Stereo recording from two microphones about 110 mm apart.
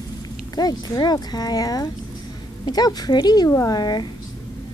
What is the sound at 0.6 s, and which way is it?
A woman's voice, 40° left (ahead or behind).